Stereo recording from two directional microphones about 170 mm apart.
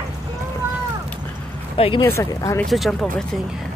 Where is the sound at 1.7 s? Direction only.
30° left (ahead or behind).